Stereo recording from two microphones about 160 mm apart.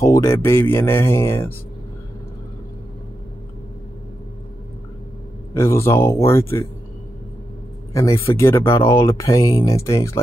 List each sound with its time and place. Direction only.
0.0 s speech: 20° left (ahead or behind)
5.5 s speech: 15° left (ahead or behind)
7.9 s speech: 20° left (ahead or behind)